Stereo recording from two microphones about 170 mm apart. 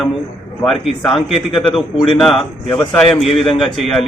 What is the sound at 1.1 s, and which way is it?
Speech, 30° left (ahead or behind).